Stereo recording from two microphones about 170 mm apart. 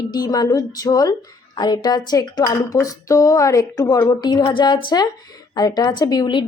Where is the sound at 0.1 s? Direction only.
20° left (ahead or behind).